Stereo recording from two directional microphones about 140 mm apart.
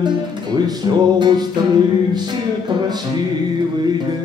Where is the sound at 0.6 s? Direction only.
30° right (ahead or behind).